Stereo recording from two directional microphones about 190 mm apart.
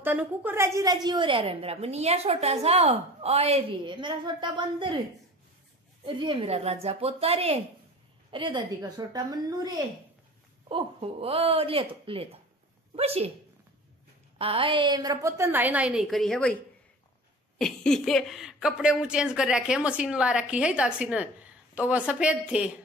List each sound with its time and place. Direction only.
0.0 s a woman's voice: 10° right (ahead or behind); by 4.9 s 25° right (ahead or behind)
6.0 s a woman's voice: 25° right (ahead or behind)
10.7 s a woman's voice: 30° right (ahead or behind)
14.4 s a woman's voice: 30° right (ahead or behind); by 16.5 s 5° left (ahead or behind)
17.6 s speech: centre (ahead or behind)